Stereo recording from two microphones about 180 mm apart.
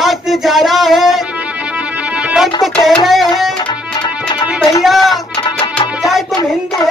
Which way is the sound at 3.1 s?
Centre (ahead or behind).